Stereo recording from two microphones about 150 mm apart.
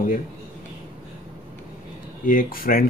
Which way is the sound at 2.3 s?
70° left (ahead or behind).